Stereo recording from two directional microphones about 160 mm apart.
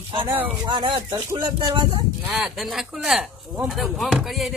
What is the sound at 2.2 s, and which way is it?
Speech, 5° right (ahead or behind).